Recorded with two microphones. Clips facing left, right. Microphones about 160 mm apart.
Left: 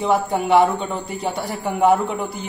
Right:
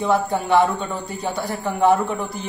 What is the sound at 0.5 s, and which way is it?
A man's voice, 15° left (ahead or behind).